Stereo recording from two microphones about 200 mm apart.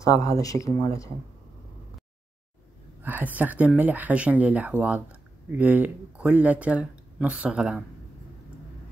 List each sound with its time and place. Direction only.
0.0 s speech: 15° left (ahead or behind)
3.0 s speech: 10° right (ahead or behind)